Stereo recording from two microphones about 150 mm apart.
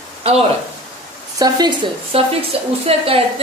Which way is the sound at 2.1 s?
40° right (ahead or behind).